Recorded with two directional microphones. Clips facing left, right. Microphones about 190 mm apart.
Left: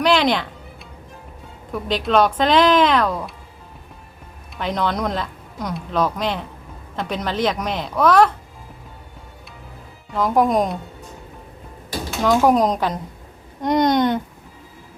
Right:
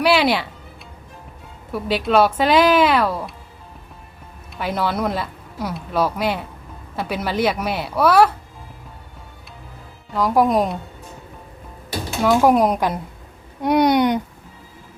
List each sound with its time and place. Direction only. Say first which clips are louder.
0.0 s music: even; 10° right (ahead or behind)
1.7 s speech: right 1 dB; 5° right (ahead or behind)
4.5 s speech: even; 5° right (ahead or behind)
10.2 s speech: right 1 dB; centre (ahead or behind)
12.2 s speech: right 1 dB; 10° right (ahead or behind)